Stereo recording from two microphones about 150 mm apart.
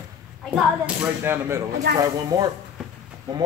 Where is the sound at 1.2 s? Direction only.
15° right (ahead or behind).